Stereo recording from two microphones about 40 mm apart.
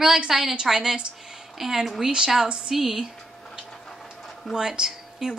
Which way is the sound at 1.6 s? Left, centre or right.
Centre.